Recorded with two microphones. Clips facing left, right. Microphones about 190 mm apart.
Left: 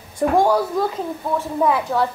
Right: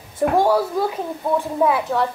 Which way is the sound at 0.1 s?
5° right (ahead or behind).